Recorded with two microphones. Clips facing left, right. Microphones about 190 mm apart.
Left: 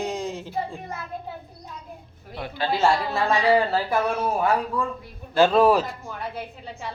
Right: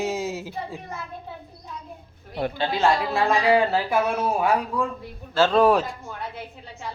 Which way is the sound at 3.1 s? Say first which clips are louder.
Right 1 dB; 5° right (ahead or behind).